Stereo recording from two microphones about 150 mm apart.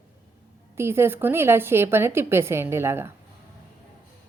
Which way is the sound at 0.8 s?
15° right (ahead or behind).